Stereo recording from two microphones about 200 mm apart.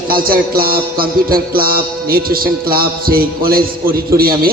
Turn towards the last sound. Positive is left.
turn(degrees=-50)  # may be behind; listen again after turning